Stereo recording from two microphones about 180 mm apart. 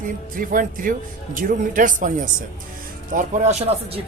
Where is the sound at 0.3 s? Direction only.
50° right (ahead or behind).